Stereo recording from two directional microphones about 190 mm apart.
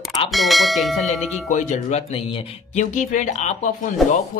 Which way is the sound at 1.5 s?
40° left (ahead or behind).